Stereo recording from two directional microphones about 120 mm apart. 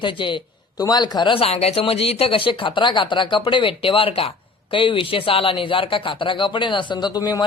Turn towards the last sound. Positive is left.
turn(degrees=30)  # may be behind; listen again after turning